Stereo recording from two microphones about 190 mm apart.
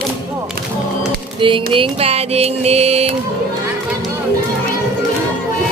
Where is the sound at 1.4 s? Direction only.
25° right (ahead or behind).